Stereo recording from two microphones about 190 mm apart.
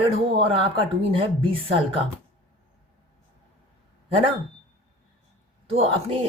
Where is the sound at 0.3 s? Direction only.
30° right (ahead or behind).